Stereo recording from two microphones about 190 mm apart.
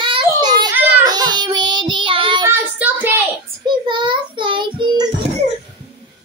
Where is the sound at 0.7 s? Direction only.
20° right (ahead or behind).